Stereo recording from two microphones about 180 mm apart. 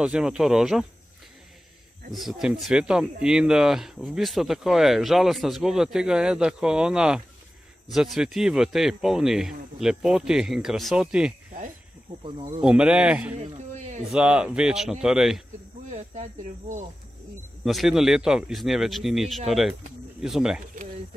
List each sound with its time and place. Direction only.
0.0 s speech: 5° right (ahead or behind)
2.1 s speech: centre (ahead or behind)
12.6 s speech: 5° right (ahead or behind)
13.4 s a sound: 40° right (ahead or behind)
14.1 s speech: 5° right (ahead or behind)
15.9 s speech: 40° right (ahead or behind)
17.6 s speech: centre (ahead or behind)